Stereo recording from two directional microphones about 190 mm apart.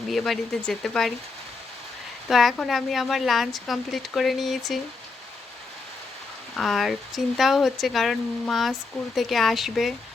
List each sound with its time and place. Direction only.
0.1 s speech: centre (ahead or behind)
2.3 s speech: centre (ahead or behind)
6.6 s speech: centre (ahead or behind)